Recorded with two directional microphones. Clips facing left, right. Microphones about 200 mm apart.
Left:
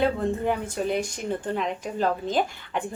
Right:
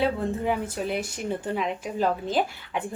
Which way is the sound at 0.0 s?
5° right (ahead or behind).